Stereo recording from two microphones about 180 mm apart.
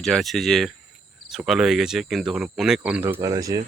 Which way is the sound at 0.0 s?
Centre (ahead or behind).